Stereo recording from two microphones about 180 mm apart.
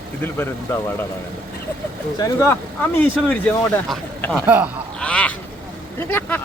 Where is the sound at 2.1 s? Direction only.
15° left (ahead or behind).